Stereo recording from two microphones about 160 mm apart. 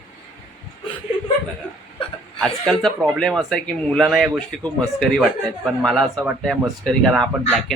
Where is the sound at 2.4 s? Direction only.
5° left (ahead or behind).